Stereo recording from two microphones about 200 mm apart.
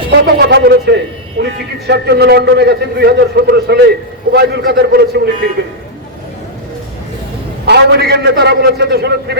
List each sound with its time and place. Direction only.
0.1 s a man's voice: 55° right (ahead or behind)
7.6 s a man's voice: 55° right (ahead or behind)